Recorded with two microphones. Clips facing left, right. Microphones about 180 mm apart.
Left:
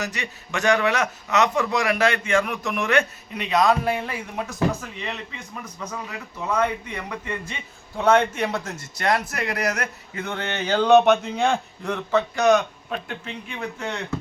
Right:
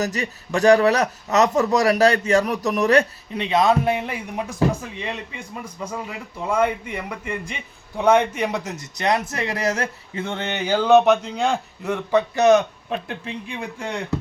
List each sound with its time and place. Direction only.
0.0 s a man's voice: 40° right (ahead or behind); by 12.2 s 10° right (ahead or behind)
12.4 s a man's voice: 25° right (ahead or behind)